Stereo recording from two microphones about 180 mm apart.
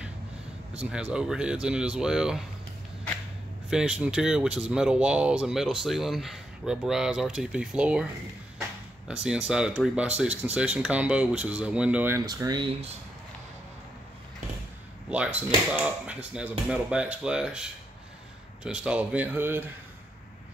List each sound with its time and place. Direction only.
0.8 s speech: 5° right (ahead or behind)
3.7 s speech: 5° right (ahead or behind)
8.5 s a sound: 5° right (ahead or behind)
9.5 s speech: 5° right (ahead or behind)
12.3 s speech: 25° right (ahead or behind)
15.0 s speech: 5° right (ahead or behind)